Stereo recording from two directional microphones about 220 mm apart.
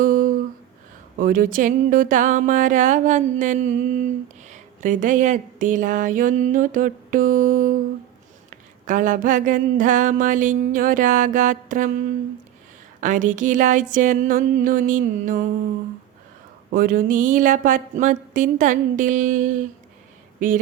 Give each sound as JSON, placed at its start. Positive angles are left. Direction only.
{"t": 0.0, "sound": "humming", "side_deg": -40}
{"t": 1.2, "sound": "speech", "side_deg": -40}
{"t": 8.9, "sound": "speech", "side_deg": -35}
{"t": 13.0, "sound": "speech", "side_deg": -35}
{"t": 16.7, "sound": "speech", "side_deg": -40}